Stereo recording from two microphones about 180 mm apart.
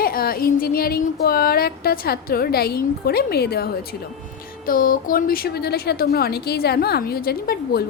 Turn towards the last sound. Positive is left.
turn(degrees=55)  # may be behind; listen again after turning